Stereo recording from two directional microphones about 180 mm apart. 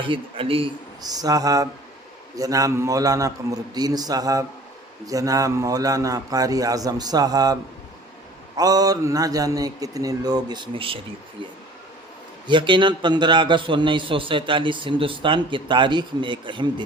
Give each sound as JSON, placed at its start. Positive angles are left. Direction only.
{"t": 0.0, "sound": "a man's voice", "side_deg": -30}
{"t": 12.5, "sound": "a man's voice", "side_deg": -25}